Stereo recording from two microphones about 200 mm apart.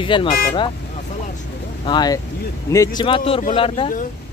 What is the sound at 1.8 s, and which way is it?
Speech, 20° left (ahead or behind).